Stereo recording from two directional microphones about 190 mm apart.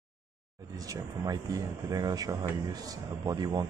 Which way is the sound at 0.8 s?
20° right (ahead or behind).